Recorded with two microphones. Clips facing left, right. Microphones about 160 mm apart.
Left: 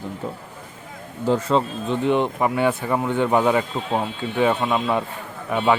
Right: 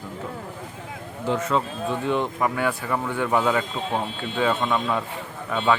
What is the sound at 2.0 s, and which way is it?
Speech, 20° left (ahead or behind).